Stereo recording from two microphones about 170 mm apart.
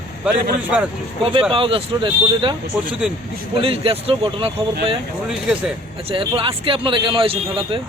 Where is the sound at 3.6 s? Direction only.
35° right (ahead or behind).